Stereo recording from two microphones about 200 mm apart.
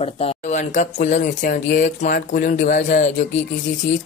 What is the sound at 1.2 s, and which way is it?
Speech, 50° left (ahead or behind).